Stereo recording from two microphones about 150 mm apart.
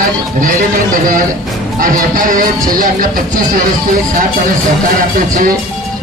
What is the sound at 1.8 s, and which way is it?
Speech, 65° right (ahead or behind).